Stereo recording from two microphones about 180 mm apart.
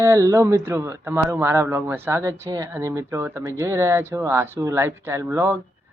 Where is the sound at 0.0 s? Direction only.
15° right (ahead or behind).